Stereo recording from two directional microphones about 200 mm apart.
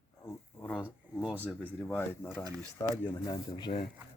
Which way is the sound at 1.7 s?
10° left (ahead or behind).